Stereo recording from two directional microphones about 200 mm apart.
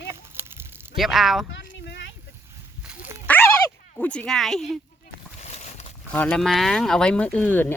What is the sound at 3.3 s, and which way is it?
Dog, 10° left (ahead or behind).